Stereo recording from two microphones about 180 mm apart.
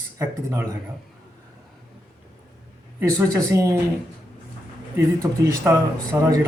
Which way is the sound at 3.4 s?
15° right (ahead or behind).